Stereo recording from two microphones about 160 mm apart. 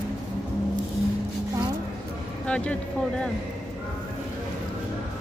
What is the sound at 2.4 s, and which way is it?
Vehicle, 5° left (ahead or behind).